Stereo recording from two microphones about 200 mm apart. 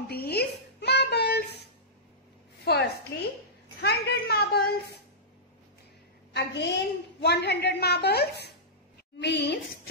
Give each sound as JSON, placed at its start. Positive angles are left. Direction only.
{"t": 0.1, "sound": "a sound", "side_deg": 50}
{"t": 2.6, "sound": "a woman's voice", "side_deg": 55}
{"t": 6.3, "sound": "a woman's voice", "side_deg": 60}